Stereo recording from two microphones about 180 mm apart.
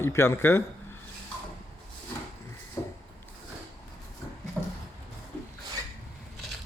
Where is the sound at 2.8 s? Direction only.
15° left (ahead or behind).